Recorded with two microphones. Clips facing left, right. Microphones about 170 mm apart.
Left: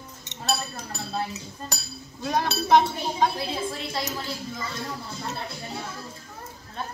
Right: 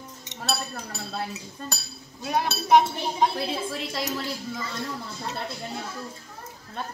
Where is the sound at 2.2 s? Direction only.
10° right (ahead or behind).